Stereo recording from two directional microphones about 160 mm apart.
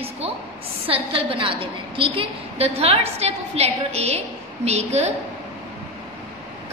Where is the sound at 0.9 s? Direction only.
35° right (ahead or behind).